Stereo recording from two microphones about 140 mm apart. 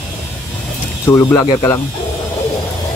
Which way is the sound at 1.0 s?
20° left (ahead or behind).